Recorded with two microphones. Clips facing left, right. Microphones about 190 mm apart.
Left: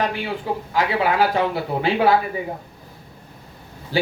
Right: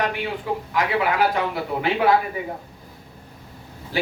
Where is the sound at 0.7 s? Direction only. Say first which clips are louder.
Left 2 dB; 30° left (ahead or behind).